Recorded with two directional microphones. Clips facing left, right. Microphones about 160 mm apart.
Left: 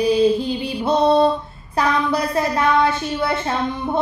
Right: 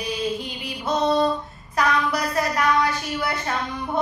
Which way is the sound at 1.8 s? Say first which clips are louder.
Left 3 dB; 30° left (ahead or behind).